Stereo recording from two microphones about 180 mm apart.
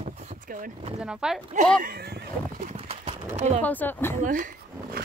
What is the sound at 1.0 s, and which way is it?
Speech, 5° right (ahead or behind).